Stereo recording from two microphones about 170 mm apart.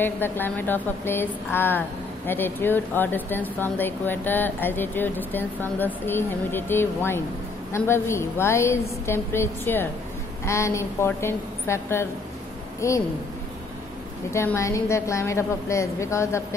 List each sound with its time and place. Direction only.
0.0 s a woman's voice: 10° left (ahead or behind)
14.3 s a woman's voice: 15° left (ahead or behind)